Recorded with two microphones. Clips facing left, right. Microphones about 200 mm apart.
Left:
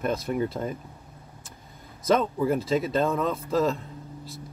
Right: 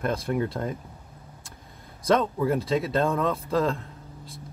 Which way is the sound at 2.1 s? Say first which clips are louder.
Even; 5° left (ahead or behind).